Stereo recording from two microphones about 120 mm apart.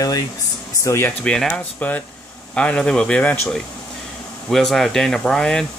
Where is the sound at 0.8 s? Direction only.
20° left (ahead or behind).